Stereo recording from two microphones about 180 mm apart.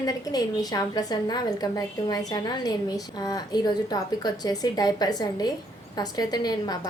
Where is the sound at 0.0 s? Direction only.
20° left (ahead or behind).